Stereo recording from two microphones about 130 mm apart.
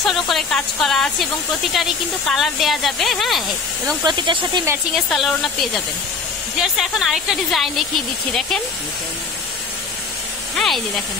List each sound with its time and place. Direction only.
0.0 s speech: centre (ahead or behind)
4.0 s speech: 35° right (ahead or behind)
4.9 s speech: centre (ahead or behind)